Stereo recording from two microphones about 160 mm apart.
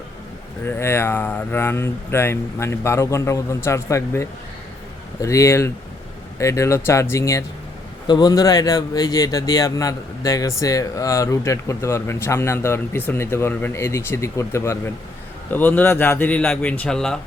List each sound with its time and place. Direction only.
0.6 s speech: 15° left (ahead or behind)